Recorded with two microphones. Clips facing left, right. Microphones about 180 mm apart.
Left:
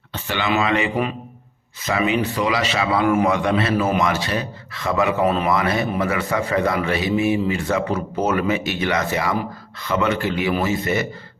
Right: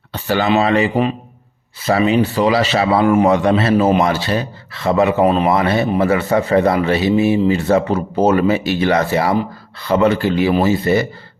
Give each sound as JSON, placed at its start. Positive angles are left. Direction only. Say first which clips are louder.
{"t": 0.1, "sound": "a man's voice", "louder": "right 7 dB", "side_deg": -40}